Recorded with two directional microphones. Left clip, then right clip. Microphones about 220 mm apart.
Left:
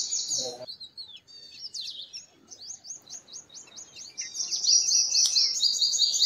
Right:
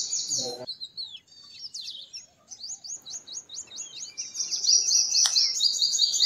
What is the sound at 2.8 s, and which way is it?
Chirp, 60° right (ahead or behind).